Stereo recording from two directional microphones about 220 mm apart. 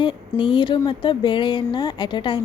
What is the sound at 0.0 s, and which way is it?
A woman's voice, 20° left (ahead or behind).